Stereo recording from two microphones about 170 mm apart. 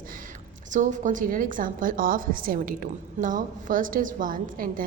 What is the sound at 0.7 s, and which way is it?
A woman's voice, 45° right (ahead or behind).